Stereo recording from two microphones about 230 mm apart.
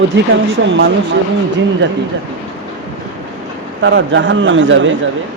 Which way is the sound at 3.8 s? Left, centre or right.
Right.